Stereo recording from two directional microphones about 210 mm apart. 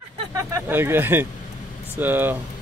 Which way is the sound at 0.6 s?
10° right (ahead or behind).